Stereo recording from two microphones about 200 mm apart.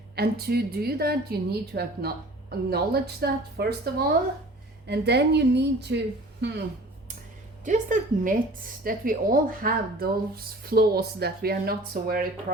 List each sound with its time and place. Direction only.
0.2 s a woman's voice: 50° right (ahead or behind)
7.6 s a woman's voice: 40° right (ahead or behind)